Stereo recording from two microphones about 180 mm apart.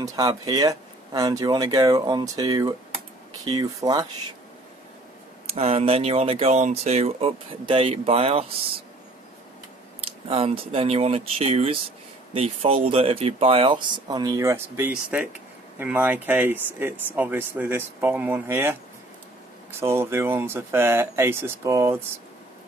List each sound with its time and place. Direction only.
0.0 s speech: 20° right (ahead or behind)
5.5 s speech: 35° right (ahead or behind)
10.3 s speech: 30° right (ahead or behind); by 18.8 s 10° right (ahead or behind)
19.8 s speech: 15° right (ahead or behind)